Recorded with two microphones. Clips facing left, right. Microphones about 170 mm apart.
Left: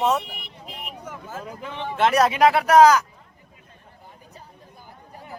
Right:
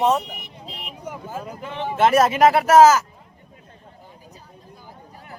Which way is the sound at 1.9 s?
5° right (ahead or behind).